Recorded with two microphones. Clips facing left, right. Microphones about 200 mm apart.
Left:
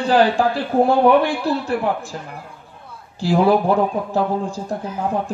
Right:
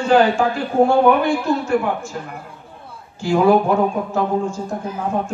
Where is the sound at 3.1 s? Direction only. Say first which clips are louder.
Right 1 dB; 35° left (ahead or behind).